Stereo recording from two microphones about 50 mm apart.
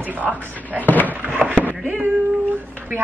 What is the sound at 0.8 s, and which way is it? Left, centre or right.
Speech, left.